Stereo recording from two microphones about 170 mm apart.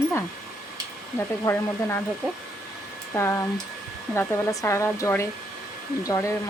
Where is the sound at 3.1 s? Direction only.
15° left (ahead or behind).